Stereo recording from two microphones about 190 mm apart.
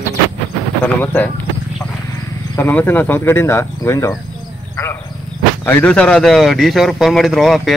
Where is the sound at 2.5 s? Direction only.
10° left (ahead or behind).